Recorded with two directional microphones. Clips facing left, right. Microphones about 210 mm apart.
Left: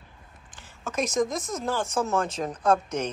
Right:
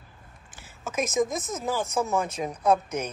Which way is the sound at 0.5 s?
5° right (ahead or behind).